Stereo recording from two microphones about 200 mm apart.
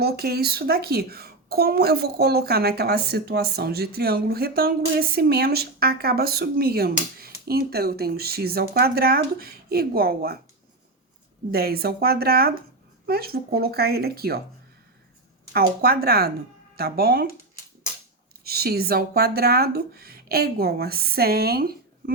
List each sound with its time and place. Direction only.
0.0 s speech: 50° right (ahead or behind)
11.5 s speech: 50° right (ahead or behind)
15.5 s speech: 50° right (ahead or behind)
18.4 s speech: 50° right (ahead or behind)